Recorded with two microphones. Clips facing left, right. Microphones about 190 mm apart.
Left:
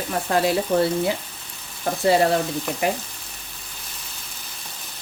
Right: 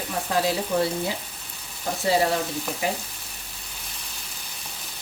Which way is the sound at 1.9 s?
60° left (ahead or behind).